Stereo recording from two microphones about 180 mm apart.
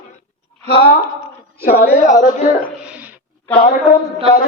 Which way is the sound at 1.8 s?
50° left (ahead or behind).